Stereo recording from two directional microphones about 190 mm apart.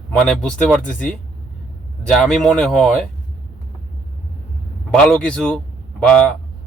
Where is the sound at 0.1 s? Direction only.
5° left (ahead or behind).